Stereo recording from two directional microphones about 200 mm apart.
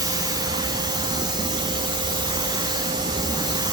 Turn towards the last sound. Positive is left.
turn(degrees=-20)  # may be behind; listen again after turning